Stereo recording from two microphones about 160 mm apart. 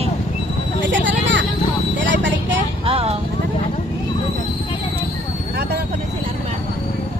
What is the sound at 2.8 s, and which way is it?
Vehicle, 35° right (ahead or behind).